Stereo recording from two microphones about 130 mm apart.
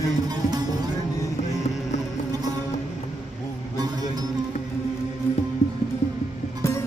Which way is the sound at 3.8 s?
30° right (ahead or behind).